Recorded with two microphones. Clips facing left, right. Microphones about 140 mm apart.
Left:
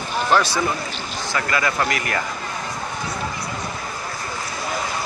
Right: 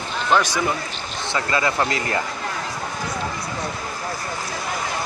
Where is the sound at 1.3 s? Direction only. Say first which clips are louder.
Right 1 dB; 25° right (ahead or behind).